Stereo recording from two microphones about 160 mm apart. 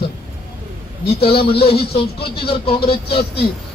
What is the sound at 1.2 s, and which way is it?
A woman's voice, 35° left (ahead or behind).